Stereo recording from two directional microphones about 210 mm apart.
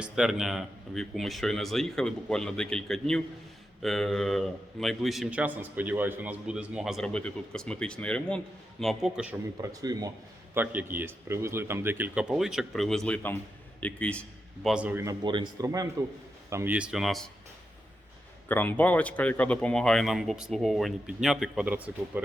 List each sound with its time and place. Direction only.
0.0 s a man's voice: 5° right (ahead or behind)
9.6 s a man's voice: 15° right (ahead or behind)
15.2 s a man's voice: 20° right (ahead or behind); by 17.2 s centre (ahead or behind)
18.4 s a man's voice: 10° left (ahead or behind)